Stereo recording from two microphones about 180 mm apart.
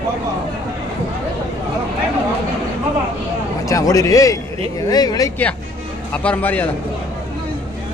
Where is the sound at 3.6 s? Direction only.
20° left (ahead or behind).